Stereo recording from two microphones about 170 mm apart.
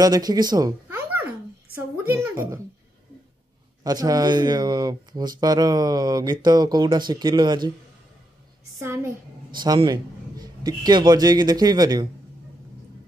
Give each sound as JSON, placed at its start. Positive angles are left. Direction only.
{"t": 0.0, "sound": "speech", "side_deg": -25}
{"t": 2.0, "sound": "a woman's voice", "side_deg": -15}
{"t": 3.8, "sound": "speech", "side_deg": -20}
{"t": 8.8, "sound": "a woman's voice", "side_deg": -15}